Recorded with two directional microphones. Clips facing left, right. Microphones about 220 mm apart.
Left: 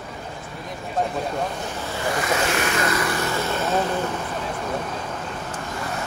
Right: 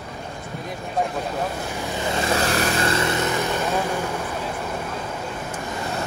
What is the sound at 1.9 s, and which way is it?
Speech, 25° right (ahead or behind).